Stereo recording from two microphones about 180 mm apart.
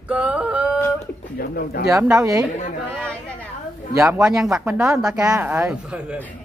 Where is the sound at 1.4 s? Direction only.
55° left (ahead or behind).